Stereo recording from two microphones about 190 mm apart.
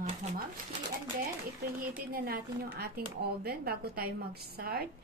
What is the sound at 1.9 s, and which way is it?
A woman's voice, 50° right (ahead or behind).